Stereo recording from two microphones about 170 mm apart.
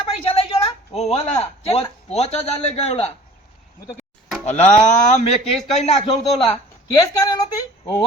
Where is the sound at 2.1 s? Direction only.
40° left (ahead or behind).